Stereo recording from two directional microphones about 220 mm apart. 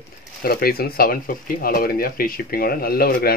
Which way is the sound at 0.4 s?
45° left (ahead or behind).